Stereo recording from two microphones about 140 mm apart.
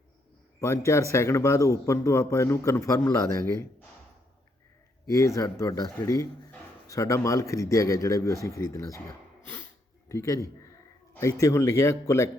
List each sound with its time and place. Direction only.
0.6 s a man's voice: 20° left (ahead or behind)
5.0 s a man's voice: 20° left (ahead or behind)
10.1 s a man's voice: 20° left (ahead or behind)